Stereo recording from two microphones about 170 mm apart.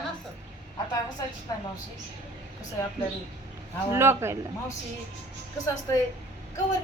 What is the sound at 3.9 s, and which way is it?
Speech, 15° right (ahead or behind).